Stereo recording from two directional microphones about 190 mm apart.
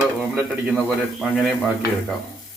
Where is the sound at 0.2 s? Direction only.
5° right (ahead or behind).